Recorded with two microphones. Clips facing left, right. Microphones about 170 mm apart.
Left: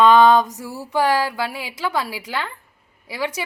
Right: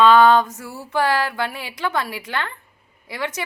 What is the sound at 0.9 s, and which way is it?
A woman's voice, 15° left (ahead or behind).